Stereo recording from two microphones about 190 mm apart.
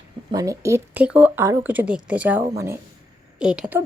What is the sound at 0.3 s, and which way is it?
A woman's voice, 20° right (ahead or behind).